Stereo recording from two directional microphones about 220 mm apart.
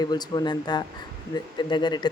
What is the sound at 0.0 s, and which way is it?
Speech, 20° left (ahead or behind).